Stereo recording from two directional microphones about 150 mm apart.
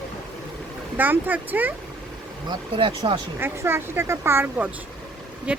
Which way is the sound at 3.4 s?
15° right (ahead or behind).